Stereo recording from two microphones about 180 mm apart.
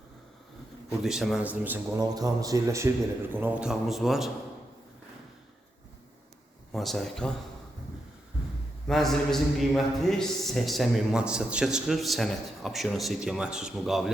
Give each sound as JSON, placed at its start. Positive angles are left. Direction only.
{"t": 1.0, "sound": "a man's voice", "side_deg": 0}
{"t": 2.0, "sound": "a man's voice", "side_deg": -20}
{"t": 6.7, "sound": "a man's voice", "side_deg": 0}
{"t": 8.9, "sound": "a man's voice", "side_deg": 0}